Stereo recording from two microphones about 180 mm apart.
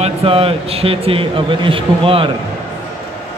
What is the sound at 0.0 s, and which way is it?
A man's voice, 30° right (ahead or behind).